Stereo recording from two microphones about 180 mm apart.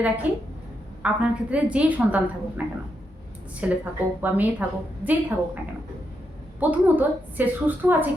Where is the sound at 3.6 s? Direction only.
5° right (ahead or behind).